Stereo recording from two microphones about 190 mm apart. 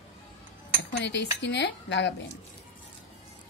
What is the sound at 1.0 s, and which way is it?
Speech, 65° left (ahead or behind).